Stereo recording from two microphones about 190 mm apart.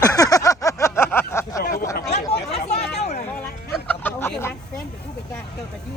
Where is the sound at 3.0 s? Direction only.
35° left (ahead or behind).